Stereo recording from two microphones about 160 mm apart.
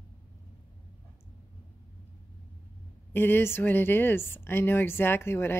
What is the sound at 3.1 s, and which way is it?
Speech, 15° left (ahead or behind).